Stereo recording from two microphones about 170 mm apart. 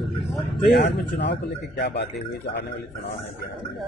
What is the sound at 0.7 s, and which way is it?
A man's voice, 85° left.